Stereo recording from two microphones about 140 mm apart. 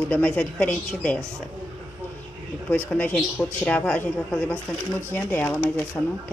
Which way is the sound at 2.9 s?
5° left (ahead or behind).